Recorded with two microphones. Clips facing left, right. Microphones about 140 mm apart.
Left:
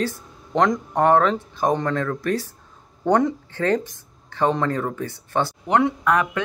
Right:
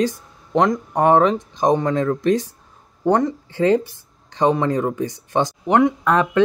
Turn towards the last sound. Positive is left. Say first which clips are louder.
# right 3 dB
turn(degrees=-25)  # may be behind; listen again after turning